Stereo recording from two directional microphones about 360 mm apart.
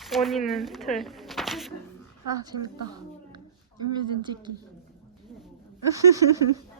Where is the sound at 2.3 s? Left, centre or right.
Centre.